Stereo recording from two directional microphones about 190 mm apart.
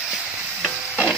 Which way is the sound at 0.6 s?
Centre (ahead or behind).